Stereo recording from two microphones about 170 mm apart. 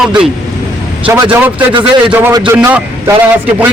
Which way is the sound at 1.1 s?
15° right (ahead or behind).